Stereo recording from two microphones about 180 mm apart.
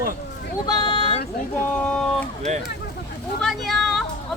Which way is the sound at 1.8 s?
5° left (ahead or behind).